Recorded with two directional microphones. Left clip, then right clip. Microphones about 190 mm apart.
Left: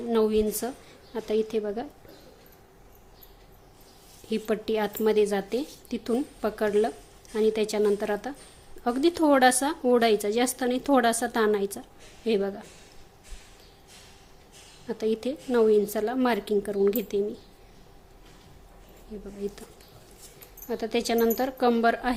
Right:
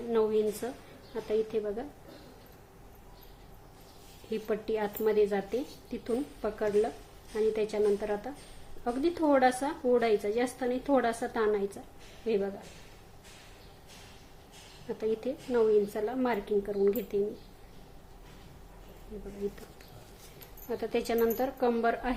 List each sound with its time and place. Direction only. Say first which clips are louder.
0.1 s speech: left 4 dB; 40° left (ahead or behind)
4.3 s a woman's voice: left 4 dB; 40° left (ahead or behind)
14.8 s a woman's voice: left 4 dB; 40° left (ahead or behind)
19.1 s speech: left 4 dB; 30° left (ahead or behind)
20.7 s speech: left 4 dB; 40° left (ahead or behind)